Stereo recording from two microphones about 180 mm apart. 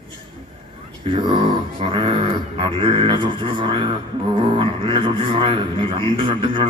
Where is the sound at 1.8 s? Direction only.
30° right (ahead or behind).